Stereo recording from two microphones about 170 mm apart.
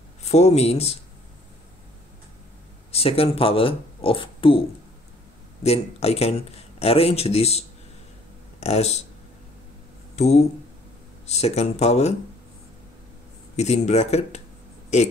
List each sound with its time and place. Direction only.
0.2 s speech: 40° left (ahead or behind)
2.9 s speech: 35° left (ahead or behind)
10.1 s speech: 40° left (ahead or behind)
13.6 s speech: 40° left (ahead or behind)